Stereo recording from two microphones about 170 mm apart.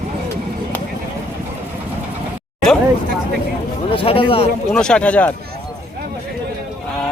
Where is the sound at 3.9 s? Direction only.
30° left (ahead or behind).